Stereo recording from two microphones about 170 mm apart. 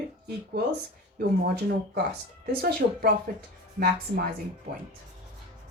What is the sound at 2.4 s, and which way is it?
Speech, 60° right (ahead or behind).